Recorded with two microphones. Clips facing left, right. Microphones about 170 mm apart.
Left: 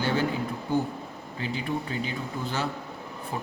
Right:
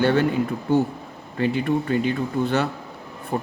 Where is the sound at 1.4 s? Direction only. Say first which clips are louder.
Right 9 dB; 60° right (ahead or behind).